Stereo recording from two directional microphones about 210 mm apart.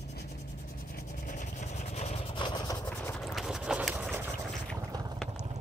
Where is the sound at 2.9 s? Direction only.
5° left (ahead or behind).